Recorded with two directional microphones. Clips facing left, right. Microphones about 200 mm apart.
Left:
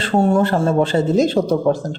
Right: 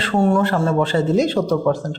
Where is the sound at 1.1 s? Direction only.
45° left (ahead or behind).